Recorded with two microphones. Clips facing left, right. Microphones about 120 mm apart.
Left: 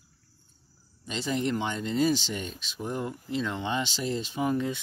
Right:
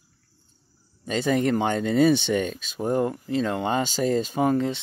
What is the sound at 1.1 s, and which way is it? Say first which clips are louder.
Speech: right 7 dB; 50° right (ahead or behind).